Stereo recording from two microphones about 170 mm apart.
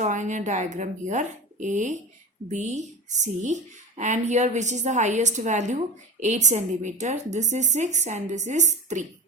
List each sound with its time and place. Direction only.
0.0 s speech: 45° right (ahead or behind)